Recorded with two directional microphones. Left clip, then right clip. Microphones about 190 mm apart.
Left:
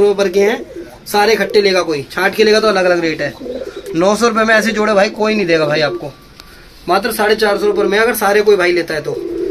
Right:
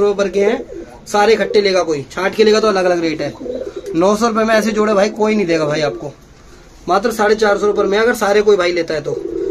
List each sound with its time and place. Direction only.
0.0 s speech: 10° left (ahead or behind)